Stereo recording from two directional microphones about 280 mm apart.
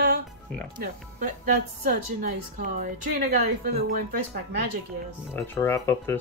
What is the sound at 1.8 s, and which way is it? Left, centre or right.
A woman's voice, right.